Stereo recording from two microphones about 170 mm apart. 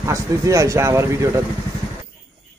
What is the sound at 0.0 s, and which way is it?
Speech, 20° right (ahead or behind).